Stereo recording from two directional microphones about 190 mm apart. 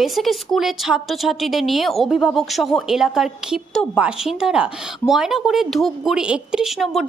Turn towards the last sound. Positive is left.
turn(degrees=0)  # may be behind; listen again after turning